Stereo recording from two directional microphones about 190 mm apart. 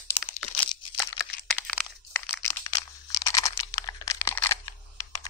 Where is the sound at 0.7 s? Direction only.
20° left (ahead or behind).